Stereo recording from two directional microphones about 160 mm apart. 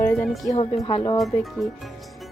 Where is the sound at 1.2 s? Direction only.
Centre (ahead or behind).